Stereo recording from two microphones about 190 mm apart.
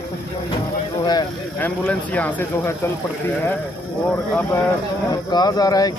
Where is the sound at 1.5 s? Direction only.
10° left (ahead or behind).